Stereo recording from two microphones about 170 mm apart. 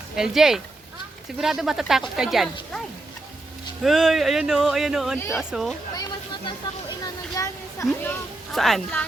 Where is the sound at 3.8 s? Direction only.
Centre (ahead or behind).